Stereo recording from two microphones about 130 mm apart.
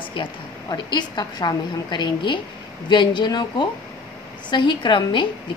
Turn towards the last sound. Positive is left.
turn(degrees=40)  # may be behind; listen again after turning